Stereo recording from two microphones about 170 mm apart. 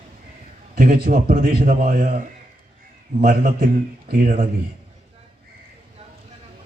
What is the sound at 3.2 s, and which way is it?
A man's voice, 55° right (ahead or behind).